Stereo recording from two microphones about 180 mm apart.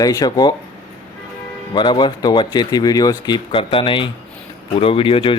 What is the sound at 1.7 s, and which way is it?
A man's voice, 25° left (ahead or behind).